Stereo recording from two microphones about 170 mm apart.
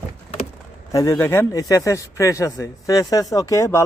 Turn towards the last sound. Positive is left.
turn(degrees=20)  # may be behind; listen again after turning